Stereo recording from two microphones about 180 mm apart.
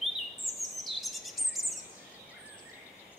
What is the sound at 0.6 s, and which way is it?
Bird vocalization, centre (ahead or behind).